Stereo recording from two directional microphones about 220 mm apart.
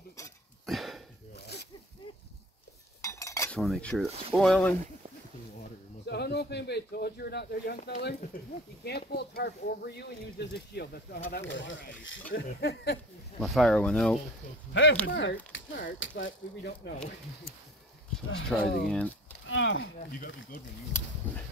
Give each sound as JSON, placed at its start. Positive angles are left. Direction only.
{"t": 0.7, "sound": "sniff", "side_deg": 0}
{"t": 1.4, "sound": "zipper", "side_deg": 50}
{"t": 3.0, "sound": "cutlery", "side_deg": 15}
{"t": 4.4, "sound": "speech", "side_deg": 5}
{"t": 5.6, "sound": "speech", "side_deg": 50}
{"t": 12.3, "sound": "speech", "side_deg": 45}
{"t": 13.4, "sound": "speech", "side_deg": 0}
{"t": 14.7, "sound": "speech", "side_deg": 60}
{"t": 18.5, "sound": "speech", "side_deg": 5}
{"t": 19.4, "sound": "speech", "side_deg": 60}
{"t": 21.2, "sound": "a sound", "side_deg": 10}